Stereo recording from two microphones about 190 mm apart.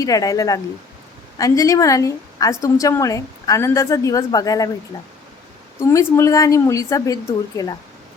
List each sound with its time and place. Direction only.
0.0 s a woman's voice: 20° left (ahead or behind)
5.8 s a woman's voice: 15° left (ahead or behind)